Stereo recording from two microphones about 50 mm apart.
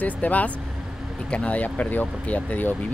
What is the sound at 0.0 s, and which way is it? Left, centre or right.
Speech, left.